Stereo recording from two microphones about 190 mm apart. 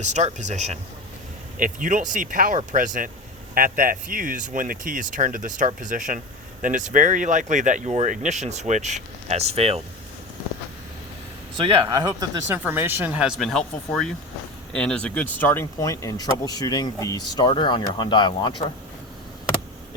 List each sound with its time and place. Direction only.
0.0 s speech: 40° right (ahead or behind)
11.5 s speech: 25° right (ahead or behind); by 18.5 s 25° left (ahead or behind)